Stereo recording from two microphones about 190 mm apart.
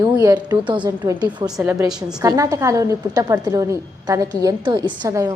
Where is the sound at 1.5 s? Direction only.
5° right (ahead or behind).